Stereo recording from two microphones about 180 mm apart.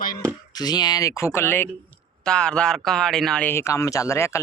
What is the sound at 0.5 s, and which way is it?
Speech, 20° left (ahead or behind).